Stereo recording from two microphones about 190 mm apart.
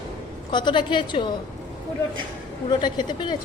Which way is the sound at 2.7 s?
25° left (ahead or behind).